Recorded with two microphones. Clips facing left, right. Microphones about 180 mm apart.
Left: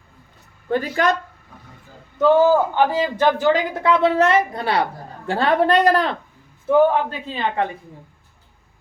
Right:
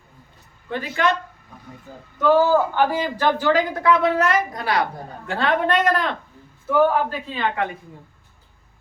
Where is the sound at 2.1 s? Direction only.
20° left (ahead or behind).